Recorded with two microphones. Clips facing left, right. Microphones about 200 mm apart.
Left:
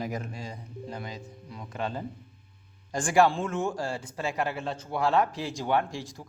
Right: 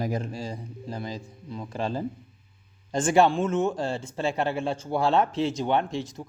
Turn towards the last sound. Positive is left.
turn(degrees=-20)  # may be behind; listen again after turning